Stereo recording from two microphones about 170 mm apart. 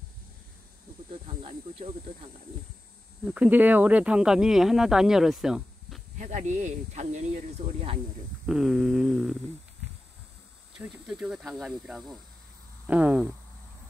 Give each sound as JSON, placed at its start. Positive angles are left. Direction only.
{"t": 1.2, "sound": "snake", "side_deg": -35}
{"t": 3.3, "sound": "speech", "side_deg": -10}
{"t": 6.1, "sound": "speech", "side_deg": -45}
{"t": 8.5, "sound": "speech", "side_deg": -5}
{"t": 10.8, "sound": "speech", "side_deg": -5}